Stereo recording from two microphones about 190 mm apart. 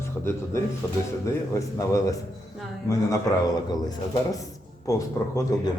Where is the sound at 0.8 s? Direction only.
15° left (ahead or behind).